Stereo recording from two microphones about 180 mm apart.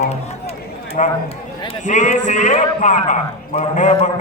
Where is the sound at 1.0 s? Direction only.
40° left (ahead or behind).